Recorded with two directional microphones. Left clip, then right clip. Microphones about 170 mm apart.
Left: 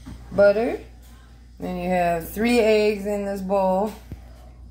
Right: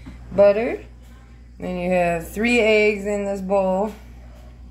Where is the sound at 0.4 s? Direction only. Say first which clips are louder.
Right 2 dB; centre (ahead or behind).